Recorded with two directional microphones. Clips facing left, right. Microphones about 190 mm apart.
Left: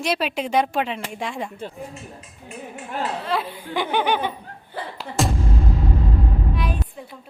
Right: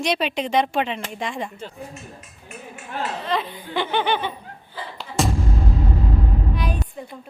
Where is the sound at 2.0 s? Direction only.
30° left (ahead or behind).